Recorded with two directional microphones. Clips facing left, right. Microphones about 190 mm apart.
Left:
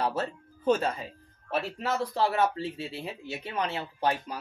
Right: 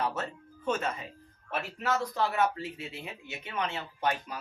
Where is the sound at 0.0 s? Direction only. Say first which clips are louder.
Left 3 dB; 35° left (ahead or behind).